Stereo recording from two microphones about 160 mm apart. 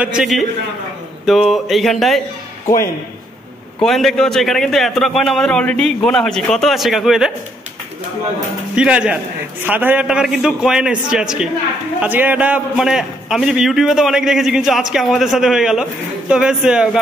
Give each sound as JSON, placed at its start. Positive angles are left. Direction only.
{"t": 0.0, "sound": "a man's voice", "side_deg": -5}
{"t": 3.8, "sound": "a man's voice", "side_deg": 0}
{"t": 8.7, "sound": "a man's voice", "side_deg": -5}